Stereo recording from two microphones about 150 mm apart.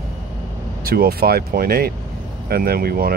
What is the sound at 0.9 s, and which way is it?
Speech, 90° right.